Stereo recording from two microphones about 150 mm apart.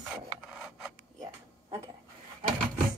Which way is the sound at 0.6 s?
5° right (ahead or behind).